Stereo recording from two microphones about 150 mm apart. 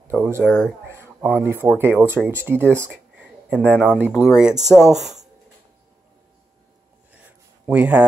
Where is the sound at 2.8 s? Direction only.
10° right (ahead or behind).